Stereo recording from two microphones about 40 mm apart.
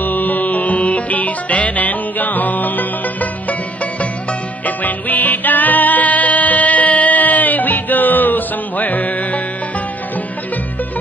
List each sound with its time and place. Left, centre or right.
0.0 s music: left